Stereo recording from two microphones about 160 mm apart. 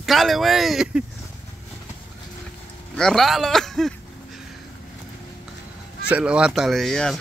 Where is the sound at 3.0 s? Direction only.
5° left (ahead or behind).